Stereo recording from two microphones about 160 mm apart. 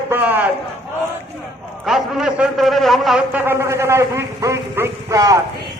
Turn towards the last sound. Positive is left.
turn(degrees=-20)  # may be behind; listen again after turning